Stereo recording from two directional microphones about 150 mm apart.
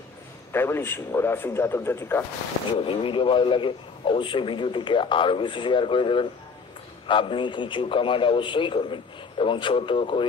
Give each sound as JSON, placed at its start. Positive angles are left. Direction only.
{"t": 0.5, "sound": "a man's voice", "side_deg": 15}
{"t": 2.8, "sound": "a man's voice", "side_deg": 35}